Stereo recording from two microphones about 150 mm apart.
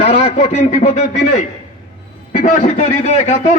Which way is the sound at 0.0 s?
45° left (ahead or behind).